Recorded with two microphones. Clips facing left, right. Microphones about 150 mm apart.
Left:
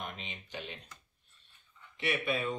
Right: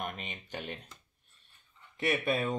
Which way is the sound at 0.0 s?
50° right (ahead or behind).